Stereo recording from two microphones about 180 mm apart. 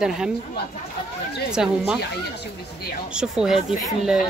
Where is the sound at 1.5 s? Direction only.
5° right (ahead or behind).